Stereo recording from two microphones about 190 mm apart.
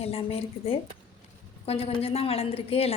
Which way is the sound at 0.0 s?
30° left (ahead or behind).